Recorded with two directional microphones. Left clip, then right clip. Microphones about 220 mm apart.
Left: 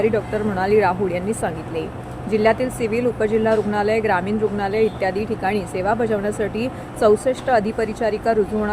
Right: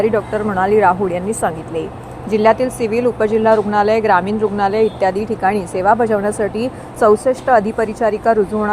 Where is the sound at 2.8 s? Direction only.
40° right (ahead or behind).